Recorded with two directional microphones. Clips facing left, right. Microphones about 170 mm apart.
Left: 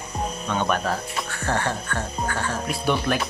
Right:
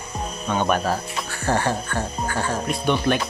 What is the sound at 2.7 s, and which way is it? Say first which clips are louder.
Speech: right 2 dB; centre (ahead or behind).